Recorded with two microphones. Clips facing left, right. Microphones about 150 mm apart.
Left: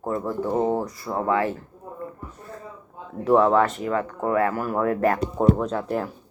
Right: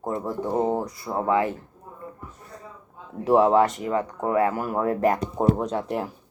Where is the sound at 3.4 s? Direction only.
20° right (ahead or behind).